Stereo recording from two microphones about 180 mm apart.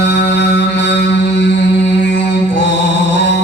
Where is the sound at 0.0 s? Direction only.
75° left (ahead or behind).